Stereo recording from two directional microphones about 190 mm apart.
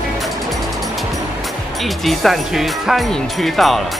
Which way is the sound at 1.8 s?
Centre (ahead or behind).